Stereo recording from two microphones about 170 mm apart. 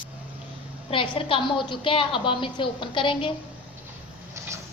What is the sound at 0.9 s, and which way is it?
Speech, 30° left (ahead or behind).